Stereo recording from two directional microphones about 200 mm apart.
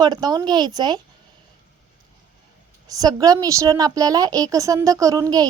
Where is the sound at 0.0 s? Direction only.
20° right (ahead or behind).